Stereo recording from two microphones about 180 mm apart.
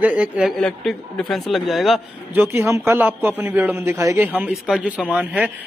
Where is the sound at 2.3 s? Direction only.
15° right (ahead or behind).